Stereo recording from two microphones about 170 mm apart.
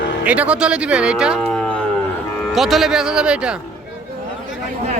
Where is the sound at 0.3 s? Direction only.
5° right (ahead or behind).